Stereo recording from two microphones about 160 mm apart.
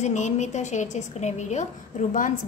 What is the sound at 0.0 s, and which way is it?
A woman's voice, 50° left (ahead or behind).